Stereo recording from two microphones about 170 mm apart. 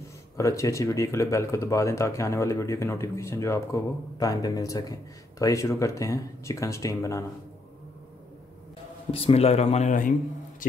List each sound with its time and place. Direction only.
0.4 s speech: 20° left (ahead or behind)
9.1 s speech: 35° left (ahead or behind)